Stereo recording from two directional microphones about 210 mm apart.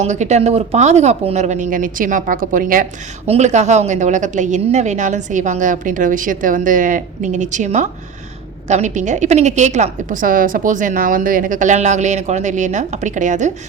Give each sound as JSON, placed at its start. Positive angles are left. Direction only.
{"t": 0.0, "sound": "a woman's voice", "side_deg": -35}